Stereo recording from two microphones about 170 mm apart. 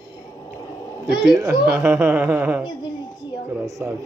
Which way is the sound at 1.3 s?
15° right (ahead or behind).